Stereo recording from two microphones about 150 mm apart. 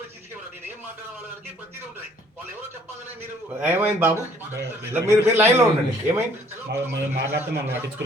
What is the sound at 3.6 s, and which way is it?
A man's voice, 15° right (ahead or behind).